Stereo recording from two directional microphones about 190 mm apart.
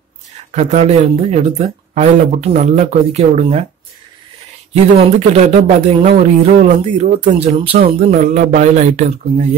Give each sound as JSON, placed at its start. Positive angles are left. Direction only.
{"t": 0.5, "sound": "speech", "side_deg": -40}
{"t": 4.9, "sound": "speech", "side_deg": -35}